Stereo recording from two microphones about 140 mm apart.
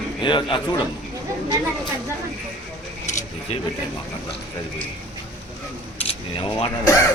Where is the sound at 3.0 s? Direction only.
60° left (ahead or behind).